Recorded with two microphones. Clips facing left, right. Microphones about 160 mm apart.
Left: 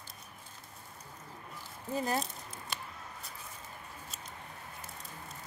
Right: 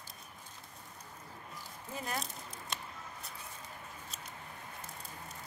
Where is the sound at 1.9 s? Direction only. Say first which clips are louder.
Left 7 dB; 35° left (ahead or behind).